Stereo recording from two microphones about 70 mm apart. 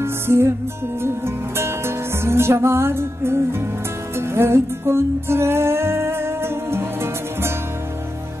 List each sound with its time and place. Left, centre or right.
0.0 s music: right